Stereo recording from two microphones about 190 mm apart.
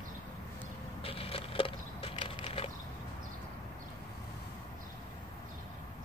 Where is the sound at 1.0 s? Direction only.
30° left (ahead or behind).